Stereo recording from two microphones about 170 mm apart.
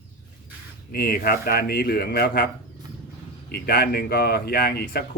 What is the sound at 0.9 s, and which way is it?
Speech, 60° left (ahead or behind).